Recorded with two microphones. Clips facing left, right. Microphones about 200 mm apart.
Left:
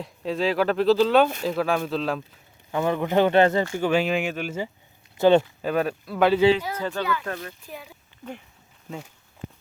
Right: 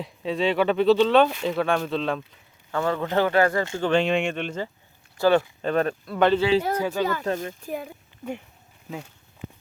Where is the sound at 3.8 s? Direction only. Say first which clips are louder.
Right 3 dB; 5° left (ahead or behind).